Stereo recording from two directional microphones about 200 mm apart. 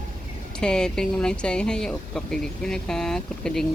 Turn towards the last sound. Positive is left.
turn(degrees=5)  # may be behind; listen again after turning